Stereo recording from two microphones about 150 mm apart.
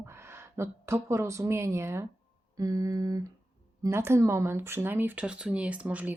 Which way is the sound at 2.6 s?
25° right (ahead or behind).